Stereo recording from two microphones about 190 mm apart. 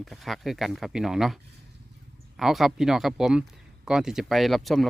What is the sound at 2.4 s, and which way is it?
Speech, centre (ahead or behind).